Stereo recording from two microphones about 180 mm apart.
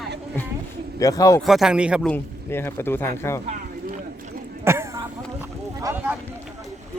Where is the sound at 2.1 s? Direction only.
10° left (ahead or behind).